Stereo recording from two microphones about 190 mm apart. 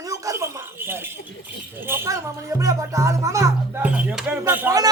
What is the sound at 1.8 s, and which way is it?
A man's voice, 10° right (ahead or behind).